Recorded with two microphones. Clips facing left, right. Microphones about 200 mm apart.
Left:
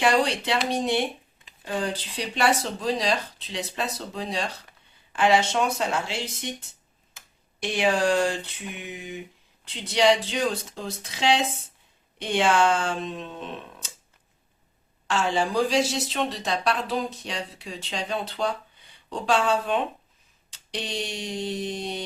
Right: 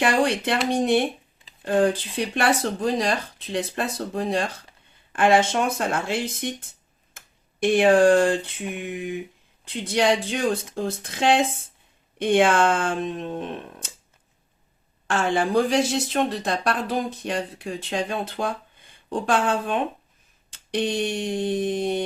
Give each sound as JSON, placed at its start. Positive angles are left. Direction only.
{"t": 0.0, "sound": "speech", "side_deg": -50}
{"t": 7.1, "sound": "a sound", "side_deg": -50}
{"t": 9.6, "sound": "speech", "side_deg": -50}
{"t": 15.0, "sound": "speech", "side_deg": -55}